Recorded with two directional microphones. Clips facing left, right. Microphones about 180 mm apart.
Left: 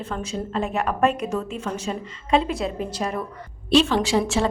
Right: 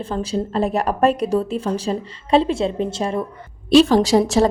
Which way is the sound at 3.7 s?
40° right (ahead or behind).